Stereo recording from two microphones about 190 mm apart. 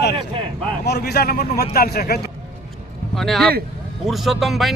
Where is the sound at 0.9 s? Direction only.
60° left (ahead or behind).